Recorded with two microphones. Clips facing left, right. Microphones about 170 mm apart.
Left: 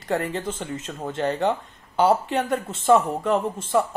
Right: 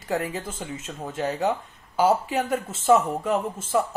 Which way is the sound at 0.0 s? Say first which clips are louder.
Left 2 dB; 10° right (ahead or behind).